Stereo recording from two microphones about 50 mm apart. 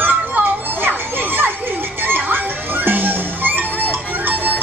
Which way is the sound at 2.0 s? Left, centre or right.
Right.